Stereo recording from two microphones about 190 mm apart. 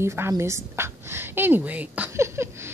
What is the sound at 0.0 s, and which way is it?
A woman's voice, 15° right (ahead or behind).